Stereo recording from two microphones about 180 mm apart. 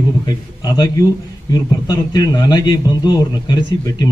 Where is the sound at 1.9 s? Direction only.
20° left (ahead or behind).